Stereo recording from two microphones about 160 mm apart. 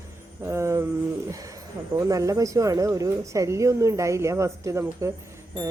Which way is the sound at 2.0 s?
20° right (ahead or behind).